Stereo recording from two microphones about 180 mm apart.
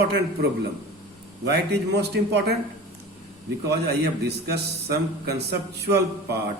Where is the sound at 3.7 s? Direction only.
65° right (ahead or behind).